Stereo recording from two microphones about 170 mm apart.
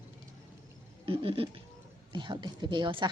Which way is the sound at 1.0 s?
35° right (ahead or behind).